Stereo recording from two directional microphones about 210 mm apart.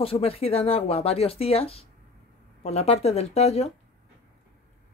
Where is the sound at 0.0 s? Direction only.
25° left (ahead or behind).